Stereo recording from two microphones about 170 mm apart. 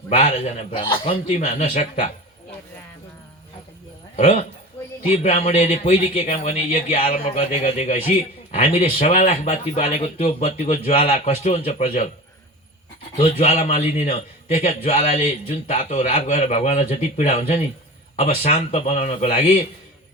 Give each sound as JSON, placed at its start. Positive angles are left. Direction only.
{"t": 0.1, "sound": "a man's voice", "side_deg": 40}
{"t": 1.1, "sound": "speech", "side_deg": 45}
{"t": 4.2, "sound": "a man's voice", "side_deg": 40}
{"t": 13.1, "sound": "a man's voice", "side_deg": 40}